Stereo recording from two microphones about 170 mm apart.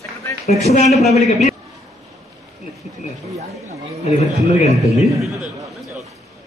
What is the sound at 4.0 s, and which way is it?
A man's voice, 40° left (ahead or behind).